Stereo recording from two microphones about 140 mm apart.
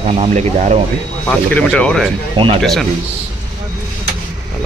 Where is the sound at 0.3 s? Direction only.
55° right (ahead or behind).